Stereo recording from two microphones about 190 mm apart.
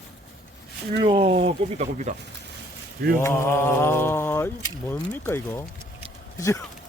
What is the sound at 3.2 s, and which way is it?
Speech, 15° left (ahead or behind).